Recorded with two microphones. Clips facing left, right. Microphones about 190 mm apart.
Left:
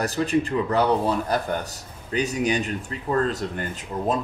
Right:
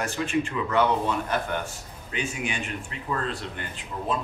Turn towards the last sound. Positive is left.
turn(degrees=45)  # may be behind; listen again after turning